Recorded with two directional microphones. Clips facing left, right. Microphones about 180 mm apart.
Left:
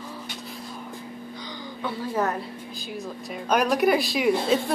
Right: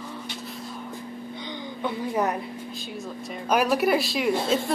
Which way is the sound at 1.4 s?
20° right (ahead or behind).